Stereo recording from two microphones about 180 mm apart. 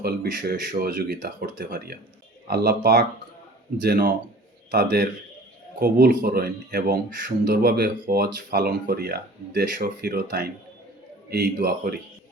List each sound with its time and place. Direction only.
0.0 s speech: 60° right (ahead or behind)